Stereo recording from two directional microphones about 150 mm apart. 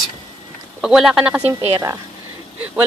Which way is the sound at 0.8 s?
5° right (ahead or behind).